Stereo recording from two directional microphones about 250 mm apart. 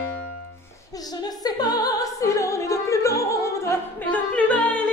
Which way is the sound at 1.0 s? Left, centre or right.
Centre.